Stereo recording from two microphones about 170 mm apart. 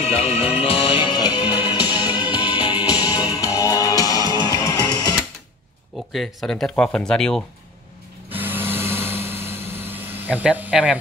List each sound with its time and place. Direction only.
0.0 s music: 35° left (ahead or behind)
1.9 s music: 10° right (ahead or behind)
2.8 s music: 25° left (ahead or behind)
6.1 s speech: centre (ahead or behind)
8.3 s a sound: 10° right (ahead or behind)